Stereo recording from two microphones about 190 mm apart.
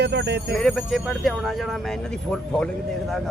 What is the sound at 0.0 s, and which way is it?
Speech, 60° right (ahead or behind).